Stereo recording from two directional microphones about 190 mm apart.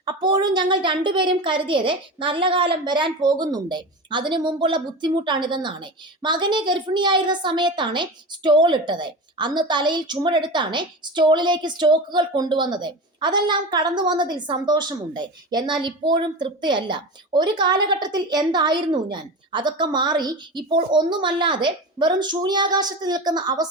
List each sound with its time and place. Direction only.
0.0 s a woman's voice: 25° right (ahead or behind)